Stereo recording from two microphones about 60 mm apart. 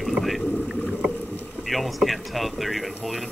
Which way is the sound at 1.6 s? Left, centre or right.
Centre.